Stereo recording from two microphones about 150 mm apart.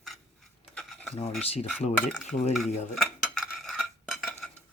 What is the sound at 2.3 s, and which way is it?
Speech, 50° left (ahead or behind).